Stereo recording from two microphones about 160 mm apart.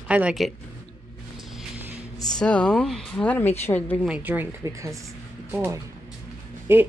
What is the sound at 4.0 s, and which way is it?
Speech, 10° right (ahead or behind).